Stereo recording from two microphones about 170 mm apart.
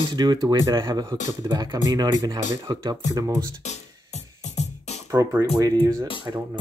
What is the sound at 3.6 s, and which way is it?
Music, 40° left (ahead or behind).